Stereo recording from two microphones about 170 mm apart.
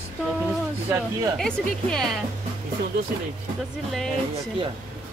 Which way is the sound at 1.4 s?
5° left (ahead or behind).